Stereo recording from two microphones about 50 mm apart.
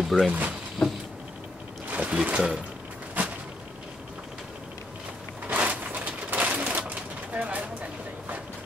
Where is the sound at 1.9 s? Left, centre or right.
Right.